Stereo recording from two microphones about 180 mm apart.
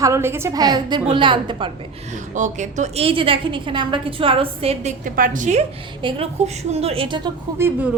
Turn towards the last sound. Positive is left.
turn(degrees=-10)  # may be behind; listen again after turning